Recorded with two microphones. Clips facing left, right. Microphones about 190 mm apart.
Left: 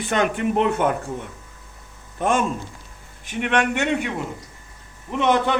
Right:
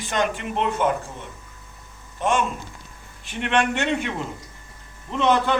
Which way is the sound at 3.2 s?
15° left (ahead or behind).